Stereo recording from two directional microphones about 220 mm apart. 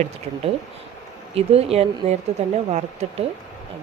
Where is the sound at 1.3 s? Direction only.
25° right (ahead or behind).